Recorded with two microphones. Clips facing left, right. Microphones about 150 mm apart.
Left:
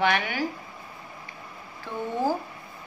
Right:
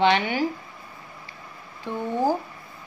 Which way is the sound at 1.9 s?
20° right (ahead or behind).